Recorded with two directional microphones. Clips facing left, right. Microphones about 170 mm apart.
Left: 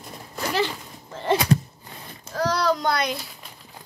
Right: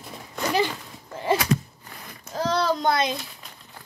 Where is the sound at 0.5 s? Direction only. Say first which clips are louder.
Even; 10° right (ahead or behind).